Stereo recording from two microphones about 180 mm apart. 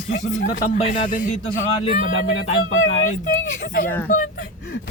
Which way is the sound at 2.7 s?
90° left.